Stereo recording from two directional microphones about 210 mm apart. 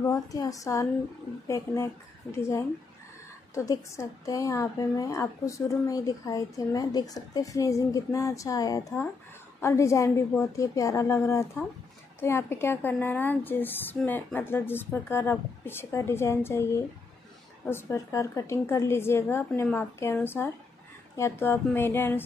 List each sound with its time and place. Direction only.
0.0 s speech: 15° left (ahead or behind)